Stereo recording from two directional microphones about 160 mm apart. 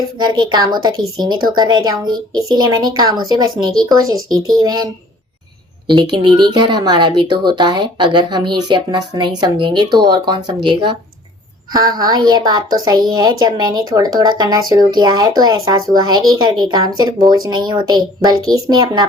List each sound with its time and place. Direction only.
0.2 s a woman's voice: 25° right (ahead or behind)
6.0 s a woman's voice: 30° right (ahead or behind)